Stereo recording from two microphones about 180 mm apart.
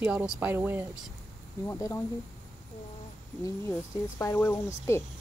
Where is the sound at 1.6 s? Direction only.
15° left (ahead or behind).